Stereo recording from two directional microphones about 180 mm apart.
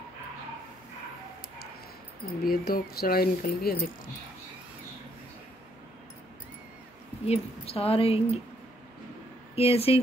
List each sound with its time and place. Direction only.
2.4 s speech: 55° left (ahead or behind)
7.2 s speech: 30° left (ahead or behind)
9.6 s speech: 35° left (ahead or behind)